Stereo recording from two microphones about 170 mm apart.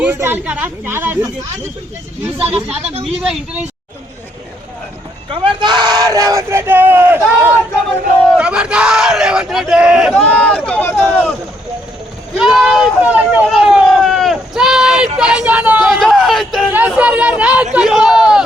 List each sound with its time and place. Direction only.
0.0 s speech: 15° right (ahead or behind)
2.4 s speech: 5° right (ahead or behind)
2.9 s speech: 35° right (ahead or behind)
3.2 s speech: 5° right (ahead or behind)
5.3 s speech: 25° right (ahead or behind)
8.4 s crowd: 5° right (ahead or behind)
12.4 s a sound: 5° right (ahead or behind)